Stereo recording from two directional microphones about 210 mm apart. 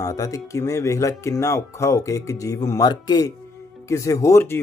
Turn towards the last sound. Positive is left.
turn(degrees=10)  # may be behind; listen again after turning